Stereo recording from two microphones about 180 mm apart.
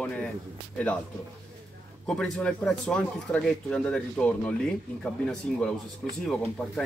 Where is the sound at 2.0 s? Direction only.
5° left (ahead or behind).